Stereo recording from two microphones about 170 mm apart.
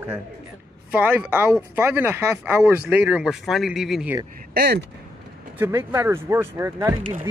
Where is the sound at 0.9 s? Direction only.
10° right (ahead or behind).